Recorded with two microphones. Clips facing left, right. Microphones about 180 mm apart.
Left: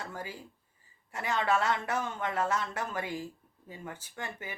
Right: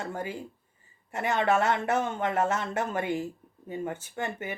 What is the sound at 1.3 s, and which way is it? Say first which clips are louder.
Speech: right 4 dB; 50° right (ahead or behind).